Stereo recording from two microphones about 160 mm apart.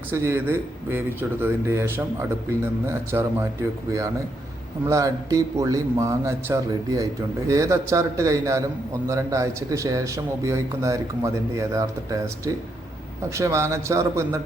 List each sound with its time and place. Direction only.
0.1 s a man's voice: 15° right (ahead or behind)
4.9 s a man's voice: 20° right (ahead or behind)
13.3 s a man's voice: 20° right (ahead or behind)